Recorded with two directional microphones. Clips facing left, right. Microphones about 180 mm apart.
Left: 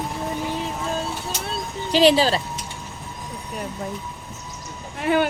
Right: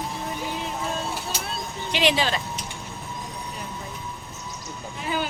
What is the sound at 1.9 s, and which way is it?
Speech, 35° left (ahead or behind).